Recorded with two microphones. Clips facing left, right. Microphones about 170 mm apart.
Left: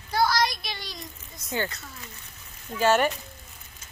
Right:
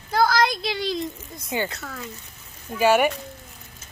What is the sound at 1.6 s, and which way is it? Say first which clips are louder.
Speech: right 7 dB; 65° right (ahead or behind).